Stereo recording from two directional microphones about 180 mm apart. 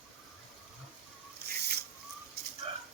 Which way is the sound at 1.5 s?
65° right (ahead or behind).